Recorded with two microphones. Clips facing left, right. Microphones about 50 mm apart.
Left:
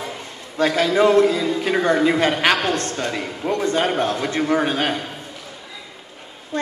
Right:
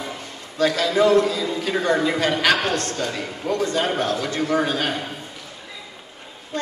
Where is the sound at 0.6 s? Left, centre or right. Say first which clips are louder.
Left 2 dB; left.